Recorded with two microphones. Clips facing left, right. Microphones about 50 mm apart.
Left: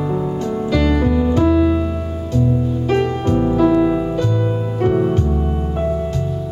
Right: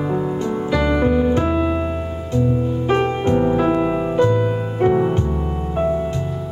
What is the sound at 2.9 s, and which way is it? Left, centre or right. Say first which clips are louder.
Music: even; right.